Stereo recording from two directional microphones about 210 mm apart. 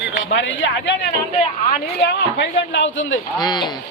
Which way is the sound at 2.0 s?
50° left (ahead or behind).